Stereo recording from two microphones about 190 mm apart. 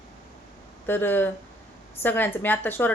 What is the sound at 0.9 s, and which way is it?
A woman's voice, 10° left (ahead or behind).